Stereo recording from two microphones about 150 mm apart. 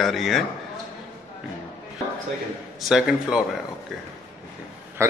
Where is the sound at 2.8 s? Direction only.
5° right (ahead or behind).